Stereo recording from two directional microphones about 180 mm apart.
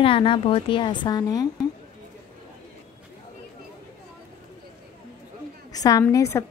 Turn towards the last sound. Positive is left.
turn(degrees=15)  # may be behind; listen again after turning